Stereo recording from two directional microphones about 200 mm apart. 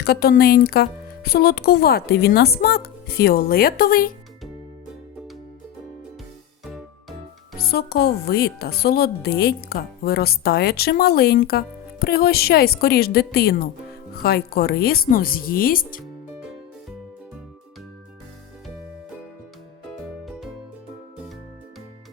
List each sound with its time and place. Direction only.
0.0 s a woman's voice: 50° left (ahead or behind)
7.6 s a woman's voice: 50° left (ahead or behind)